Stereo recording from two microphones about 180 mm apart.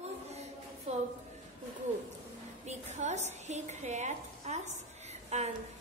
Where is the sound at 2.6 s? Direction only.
40° right (ahead or behind).